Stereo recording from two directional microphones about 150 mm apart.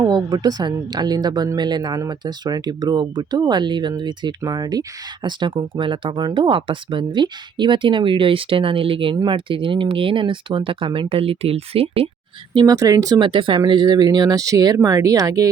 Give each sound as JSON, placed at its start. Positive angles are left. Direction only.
{"t": 0.0, "sound": "a woman's voice", "side_deg": -25}
{"t": 12.5, "sound": "speech", "side_deg": -25}